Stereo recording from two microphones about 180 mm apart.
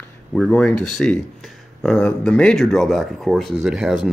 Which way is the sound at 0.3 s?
5° left (ahead or behind).